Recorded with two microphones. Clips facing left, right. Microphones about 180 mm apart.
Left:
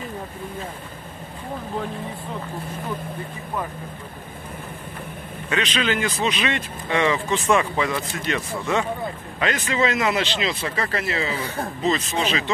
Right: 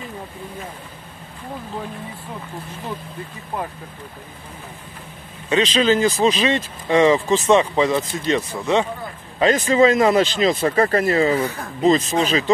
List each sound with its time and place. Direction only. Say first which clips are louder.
5.5 s speech: right 7 dB; 30° right (ahead or behind)